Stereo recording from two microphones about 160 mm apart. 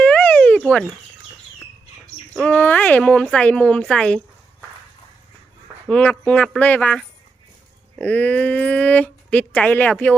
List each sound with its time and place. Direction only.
0.0 s a sound: 10° left (ahead or behind)
2.3 s speech: 5° left (ahead or behind)
5.9 s speech: 10° left (ahead or behind)